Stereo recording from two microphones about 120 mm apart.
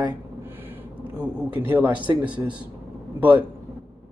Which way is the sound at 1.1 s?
10° right (ahead or behind).